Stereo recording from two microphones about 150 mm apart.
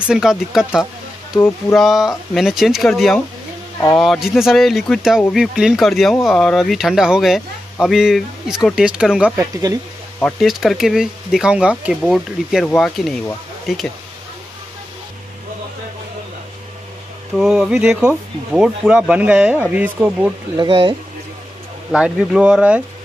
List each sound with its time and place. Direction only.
0.0 s speech: 5° right (ahead or behind)
1.8 s speech: centre (ahead or behind)
9.4 s speech: 25° right (ahead or behind)
10.4 s speech: centre (ahead or behind)
17.4 s speech: 5° right (ahead or behind)
20.5 s speech: 35° right (ahead or behind)
21.9 s speech: 5° right (ahead or behind)